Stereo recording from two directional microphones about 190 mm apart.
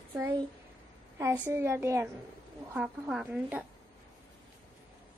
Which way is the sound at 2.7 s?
5° right (ahead or behind).